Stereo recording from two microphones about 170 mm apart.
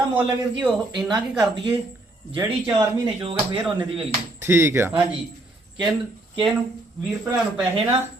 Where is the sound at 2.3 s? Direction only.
30° right (ahead or behind).